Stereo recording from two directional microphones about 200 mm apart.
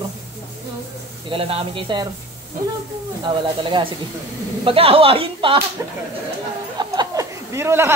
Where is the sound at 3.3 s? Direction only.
25° right (ahead or behind).